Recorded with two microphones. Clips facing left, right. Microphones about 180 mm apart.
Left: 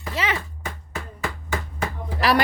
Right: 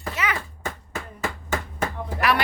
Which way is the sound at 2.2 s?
35° left (ahead or behind).